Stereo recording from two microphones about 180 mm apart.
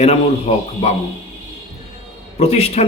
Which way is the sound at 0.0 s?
35° left (ahead or behind).